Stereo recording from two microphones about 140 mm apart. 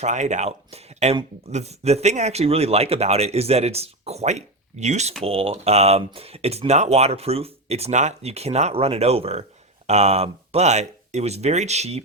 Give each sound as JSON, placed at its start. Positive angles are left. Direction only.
{"t": 0.0, "sound": "speech", "side_deg": -55}
{"t": 5.2, "sound": "speech", "side_deg": -45}